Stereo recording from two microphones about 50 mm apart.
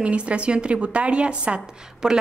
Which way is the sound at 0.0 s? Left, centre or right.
Right.